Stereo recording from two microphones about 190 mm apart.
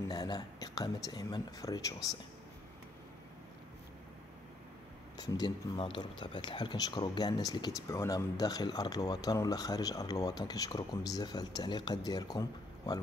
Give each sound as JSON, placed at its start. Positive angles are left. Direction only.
{"t": 0.1, "sound": "speech", "side_deg": 20}
{"t": 5.1, "sound": "speech", "side_deg": 20}